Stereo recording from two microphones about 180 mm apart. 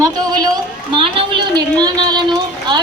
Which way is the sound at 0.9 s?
30° right (ahead or behind).